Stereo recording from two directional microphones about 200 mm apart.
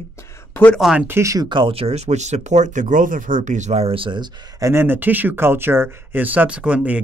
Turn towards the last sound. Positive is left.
turn(degrees=-5)  # may be behind; listen again after turning